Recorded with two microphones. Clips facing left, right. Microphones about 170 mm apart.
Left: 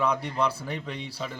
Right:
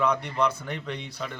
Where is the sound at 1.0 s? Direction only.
30° left (ahead or behind).